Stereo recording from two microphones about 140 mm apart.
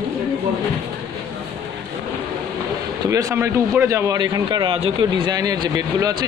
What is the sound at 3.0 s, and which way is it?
A man's voice, 20° right (ahead or behind).